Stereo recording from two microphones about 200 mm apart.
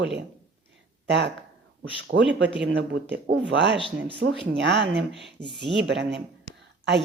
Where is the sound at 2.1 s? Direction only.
65° right (ahead or behind).